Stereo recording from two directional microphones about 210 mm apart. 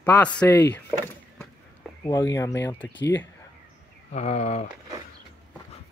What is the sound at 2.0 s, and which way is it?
Speech, 15° left (ahead or behind).